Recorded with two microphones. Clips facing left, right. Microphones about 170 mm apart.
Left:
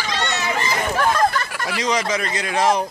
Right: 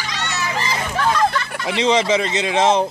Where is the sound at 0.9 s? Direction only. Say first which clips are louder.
Right 1 dB; 45° left (ahead or behind).